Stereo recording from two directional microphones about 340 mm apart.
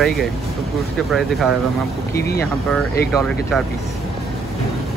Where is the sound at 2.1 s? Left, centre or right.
Left.